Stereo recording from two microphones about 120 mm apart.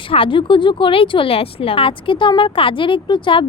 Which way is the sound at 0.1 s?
45° left (ahead or behind).